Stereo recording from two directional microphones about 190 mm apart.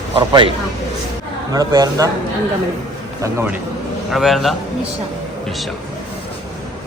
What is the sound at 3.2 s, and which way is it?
Speech, 15° right (ahead or behind).